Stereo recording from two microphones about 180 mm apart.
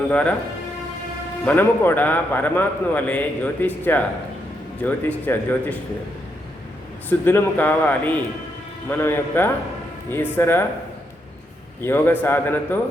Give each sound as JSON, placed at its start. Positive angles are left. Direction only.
{"t": 0.1, "sound": "a man's voice", "side_deg": 5}
{"t": 1.5, "sound": "a man's voice", "side_deg": 10}
{"t": 7.1, "sound": "a man's voice", "side_deg": 10}
{"t": 11.8, "sound": "a man's voice", "side_deg": 10}